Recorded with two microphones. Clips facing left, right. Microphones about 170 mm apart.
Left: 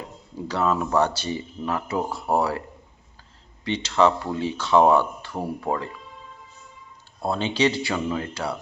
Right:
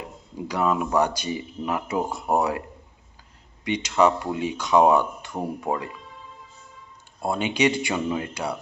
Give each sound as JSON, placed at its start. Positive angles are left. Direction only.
{"t": 0.3, "sound": "speech", "side_deg": -15}
{"t": 3.6, "sound": "speech", "side_deg": -15}
{"t": 7.2, "sound": "speech", "side_deg": -15}